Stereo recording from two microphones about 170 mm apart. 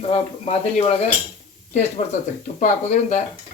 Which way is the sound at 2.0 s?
45° left (ahead or behind).